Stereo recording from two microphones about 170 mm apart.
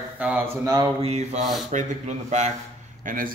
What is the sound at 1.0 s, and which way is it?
Mantra, 40° right (ahead or behind).